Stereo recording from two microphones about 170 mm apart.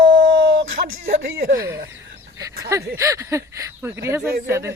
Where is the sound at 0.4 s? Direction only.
65° right (ahead or behind).